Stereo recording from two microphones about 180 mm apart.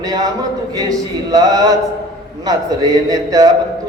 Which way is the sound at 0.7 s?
20° right (ahead or behind).